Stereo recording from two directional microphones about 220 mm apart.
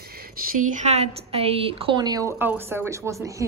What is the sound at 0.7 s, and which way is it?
A woman's voice, 30° right (ahead or behind).